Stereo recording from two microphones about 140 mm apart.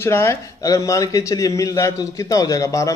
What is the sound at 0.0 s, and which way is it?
Speech, 20° left (ahead or behind).